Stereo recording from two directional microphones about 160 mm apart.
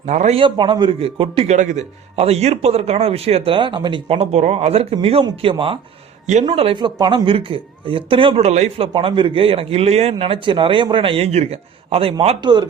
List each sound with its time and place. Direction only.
0.0 s a man's voice: 45° right (ahead or behind)
0.4 s a man's voice: 30° right (ahead or behind)
1.5 s a man's voice: 50° right (ahead or behind)
8.9 s a man's voice: 30° right (ahead or behind)
12.4 s speech: 25° right (ahead or behind)